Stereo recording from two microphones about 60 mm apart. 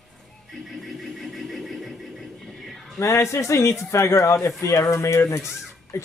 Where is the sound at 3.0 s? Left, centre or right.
Left.